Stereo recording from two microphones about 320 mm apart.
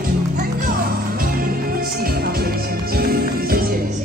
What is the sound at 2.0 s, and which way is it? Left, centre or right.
Music, right.